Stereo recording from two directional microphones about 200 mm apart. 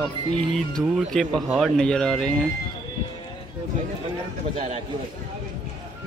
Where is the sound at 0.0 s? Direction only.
5° left (ahead or behind).